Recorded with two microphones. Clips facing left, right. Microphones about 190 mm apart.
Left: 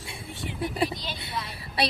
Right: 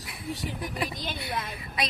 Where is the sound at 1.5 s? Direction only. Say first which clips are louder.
Left 4 dB; 35° left (ahead or behind).